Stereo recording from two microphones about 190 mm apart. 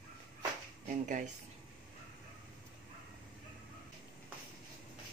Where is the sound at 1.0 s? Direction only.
45° right (ahead or behind).